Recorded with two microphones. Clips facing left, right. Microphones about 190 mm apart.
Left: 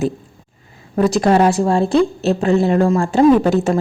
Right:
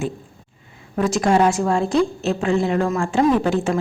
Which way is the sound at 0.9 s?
35° left (ahead or behind).